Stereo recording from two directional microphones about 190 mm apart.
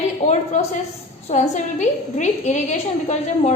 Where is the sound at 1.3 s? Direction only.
40° left (ahead or behind).